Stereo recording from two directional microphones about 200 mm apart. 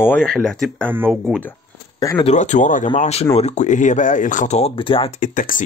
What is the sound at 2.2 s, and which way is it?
Speech, 35° left (ahead or behind).